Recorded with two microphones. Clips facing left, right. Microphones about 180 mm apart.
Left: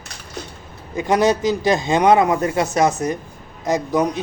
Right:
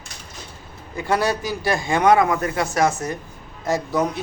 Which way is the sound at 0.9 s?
20° left (ahead or behind).